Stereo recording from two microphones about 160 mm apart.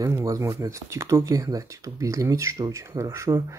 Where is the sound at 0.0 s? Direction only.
20° right (ahead or behind).